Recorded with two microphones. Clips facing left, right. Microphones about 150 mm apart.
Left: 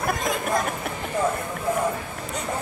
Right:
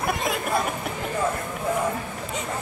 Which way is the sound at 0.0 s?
5° right (ahead or behind).